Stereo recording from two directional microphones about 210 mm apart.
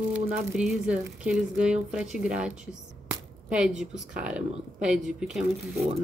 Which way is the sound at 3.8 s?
5° right (ahead or behind).